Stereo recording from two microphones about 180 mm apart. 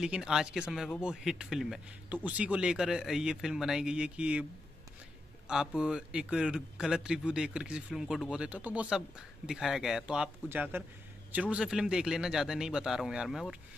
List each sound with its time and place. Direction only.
0.0 s speech: 5° right (ahead or behind)
5.8 s speech: 5° right (ahead or behind)